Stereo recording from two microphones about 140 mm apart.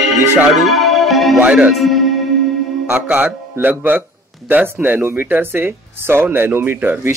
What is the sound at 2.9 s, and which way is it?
Speech, 15° right (ahead or behind).